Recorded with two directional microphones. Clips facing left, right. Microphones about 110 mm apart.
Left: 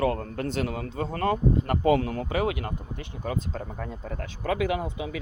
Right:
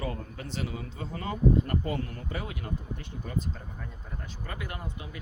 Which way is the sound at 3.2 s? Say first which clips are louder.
Left 5 dB; 90° left.